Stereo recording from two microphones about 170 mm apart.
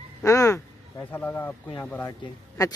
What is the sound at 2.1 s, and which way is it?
Speech, 20° left (ahead or behind).